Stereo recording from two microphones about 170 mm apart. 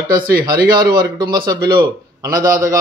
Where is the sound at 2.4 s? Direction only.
50° right (ahead or behind).